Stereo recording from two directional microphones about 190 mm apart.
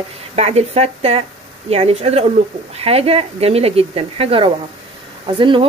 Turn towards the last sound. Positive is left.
turn(degrees=-25)  # may be behind; listen again after turning